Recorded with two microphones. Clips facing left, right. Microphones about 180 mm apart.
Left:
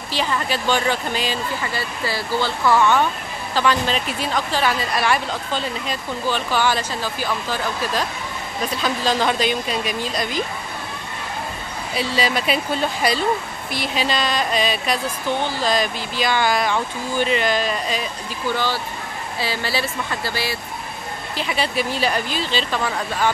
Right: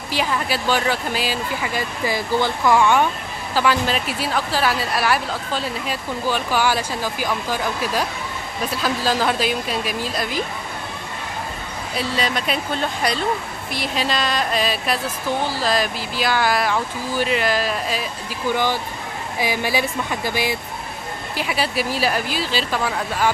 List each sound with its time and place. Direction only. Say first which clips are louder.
0.1 s a woman's voice: even; 10° right (ahead or behind)
11.9 s speech: left 2 dB; centre (ahead or behind)
18.5 s a woman's voice: right 2 dB; 15° right (ahead or behind)
21.4 s a woman's voice: even; 5° right (ahead or behind)